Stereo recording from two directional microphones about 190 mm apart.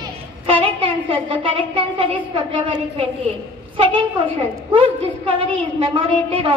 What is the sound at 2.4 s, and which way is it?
A woman's voice, 25° right (ahead or behind).